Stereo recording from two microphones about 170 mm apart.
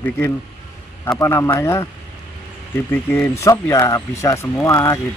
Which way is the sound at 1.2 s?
15° left (ahead or behind).